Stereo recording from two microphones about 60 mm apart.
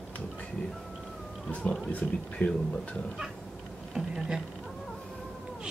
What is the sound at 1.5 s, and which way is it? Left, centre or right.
Speech, left.